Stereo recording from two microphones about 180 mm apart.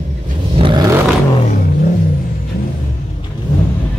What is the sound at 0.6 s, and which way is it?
Vehicle, 25° right (ahead or behind).